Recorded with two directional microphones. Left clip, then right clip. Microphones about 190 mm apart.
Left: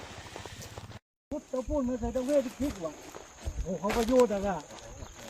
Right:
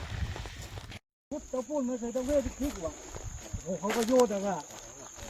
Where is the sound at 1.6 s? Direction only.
20° right (ahead or behind).